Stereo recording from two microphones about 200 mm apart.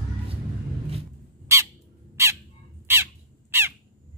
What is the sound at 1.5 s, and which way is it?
Bird, 15° right (ahead or behind).